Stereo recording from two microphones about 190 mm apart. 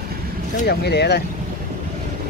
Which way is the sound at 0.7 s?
60° left (ahead or behind).